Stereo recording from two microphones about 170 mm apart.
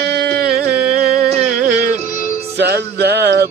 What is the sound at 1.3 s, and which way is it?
Music, 45° right (ahead or behind).